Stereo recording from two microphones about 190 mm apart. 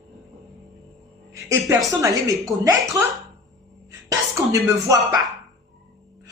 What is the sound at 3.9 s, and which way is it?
Speech, 15° right (ahead or behind).